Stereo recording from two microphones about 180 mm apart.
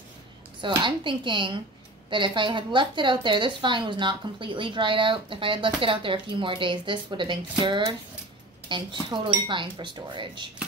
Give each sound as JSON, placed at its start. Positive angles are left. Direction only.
{"t": 0.6, "sound": "speech", "side_deg": -25}